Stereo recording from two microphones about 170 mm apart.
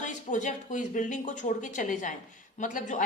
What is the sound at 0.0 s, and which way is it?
A man's voice, 45° left (ahead or behind).